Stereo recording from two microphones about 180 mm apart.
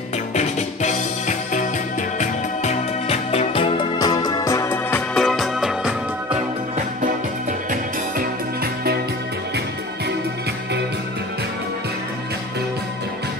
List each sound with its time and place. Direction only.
0.3 s music: 40° left (ahead or behind); by 5.0 s 15° left (ahead or behind)
5.1 s music: centre (ahead or behind)